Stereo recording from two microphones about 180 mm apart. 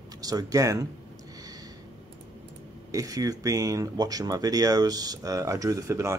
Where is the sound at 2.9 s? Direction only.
20° right (ahead or behind).